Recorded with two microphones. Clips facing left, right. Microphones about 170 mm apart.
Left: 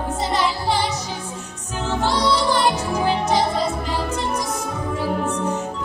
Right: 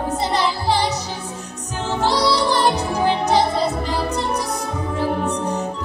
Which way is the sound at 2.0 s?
35° right (ahead or behind).